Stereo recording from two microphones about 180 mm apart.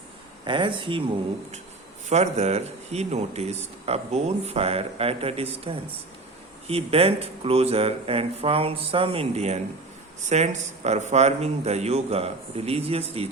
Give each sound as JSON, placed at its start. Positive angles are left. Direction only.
{"t": 0.4, "sound": "speech", "side_deg": -25}
{"t": 2.0, "sound": "speech", "side_deg": -40}